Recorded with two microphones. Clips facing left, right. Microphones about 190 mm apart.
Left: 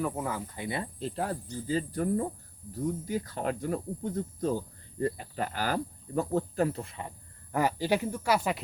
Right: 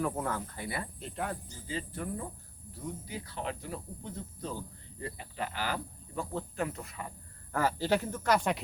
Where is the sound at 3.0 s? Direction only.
45° left (ahead or behind); by 7.1 s 25° left (ahead or behind).